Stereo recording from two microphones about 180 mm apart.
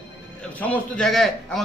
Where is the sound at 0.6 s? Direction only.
5° left (ahead or behind).